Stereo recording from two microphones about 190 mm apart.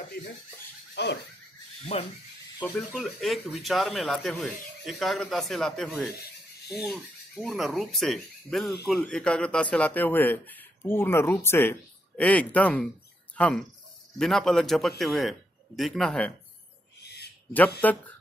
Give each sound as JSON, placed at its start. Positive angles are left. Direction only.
{"t": 1.0, "sound": "speech", "side_deg": 65}
{"t": 1.9, "sound": "speech", "side_deg": 35}
{"t": 2.9, "sound": "speech", "side_deg": 0}
{"t": 17.0, "sound": "owl", "side_deg": 60}
{"t": 17.8, "sound": "speech", "side_deg": 10}